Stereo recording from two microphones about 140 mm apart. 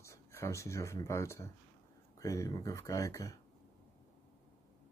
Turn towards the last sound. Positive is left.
turn(degrees=20)  # may be behind; listen again after turning